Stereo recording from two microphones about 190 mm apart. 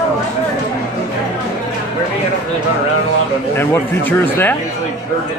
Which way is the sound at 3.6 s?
10° left (ahead or behind).